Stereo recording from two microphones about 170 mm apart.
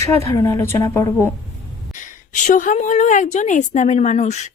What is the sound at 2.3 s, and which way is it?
A woman's voice, 50° left (ahead or behind).